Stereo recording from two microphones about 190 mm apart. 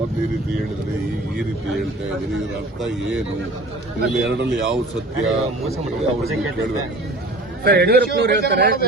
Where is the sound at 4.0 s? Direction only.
60° right (ahead or behind).